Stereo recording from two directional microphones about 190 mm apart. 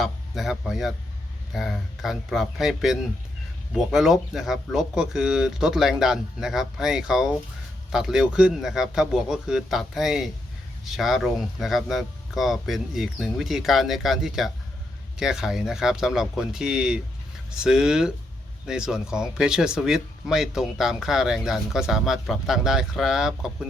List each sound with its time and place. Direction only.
0.0 s speech: centre (ahead or behind)